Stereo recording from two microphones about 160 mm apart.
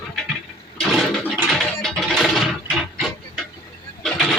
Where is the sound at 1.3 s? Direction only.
Centre (ahead or behind).